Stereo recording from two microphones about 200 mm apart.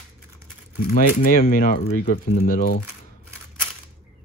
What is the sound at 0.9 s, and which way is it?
Speech, 45° left (ahead or behind).